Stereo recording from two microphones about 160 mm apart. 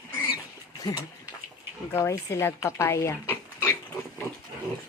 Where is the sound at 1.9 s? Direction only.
20° left (ahead or behind).